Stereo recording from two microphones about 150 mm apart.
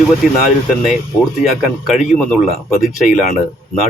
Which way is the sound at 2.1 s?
5° left (ahead or behind).